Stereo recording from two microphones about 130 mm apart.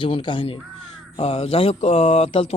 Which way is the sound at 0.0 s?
40° left (ahead or behind).